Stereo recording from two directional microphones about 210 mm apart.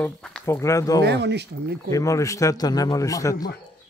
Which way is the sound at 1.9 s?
15° left (ahead or behind).